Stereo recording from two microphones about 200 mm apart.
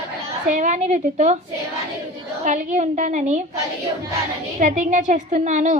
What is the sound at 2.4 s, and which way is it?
A woman's voice, 35° right (ahead or behind).